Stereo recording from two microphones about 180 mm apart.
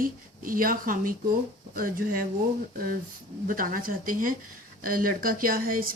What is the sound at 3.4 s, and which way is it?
Speech, 50° right (ahead or behind).